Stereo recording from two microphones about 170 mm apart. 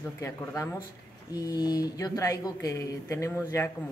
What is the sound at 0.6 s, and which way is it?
Speech, 15° left (ahead or behind).